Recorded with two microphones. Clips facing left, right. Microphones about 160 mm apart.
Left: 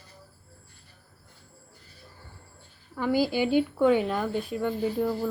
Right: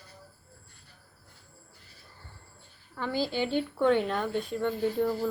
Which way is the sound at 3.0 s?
10° left (ahead or behind).